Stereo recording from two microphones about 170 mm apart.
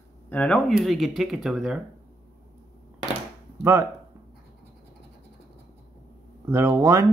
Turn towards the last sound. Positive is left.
turn(degrees=-15)  # may be behind; listen again after turning